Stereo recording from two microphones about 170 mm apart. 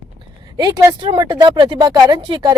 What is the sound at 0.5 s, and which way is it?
Speech, 25° right (ahead or behind).